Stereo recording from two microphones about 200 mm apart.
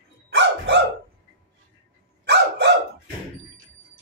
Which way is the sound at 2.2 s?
55° right (ahead or behind).